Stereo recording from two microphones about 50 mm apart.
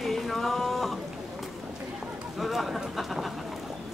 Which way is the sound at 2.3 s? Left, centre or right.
Centre.